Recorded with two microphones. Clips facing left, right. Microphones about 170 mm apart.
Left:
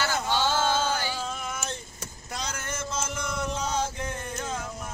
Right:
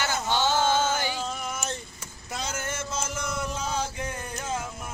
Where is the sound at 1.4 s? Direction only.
5° right (ahead or behind).